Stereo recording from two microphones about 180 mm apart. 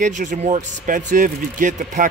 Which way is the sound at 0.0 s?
45° right (ahead or behind).